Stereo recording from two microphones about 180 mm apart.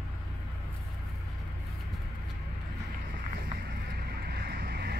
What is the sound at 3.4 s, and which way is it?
Vehicle, 60° right (ahead or behind).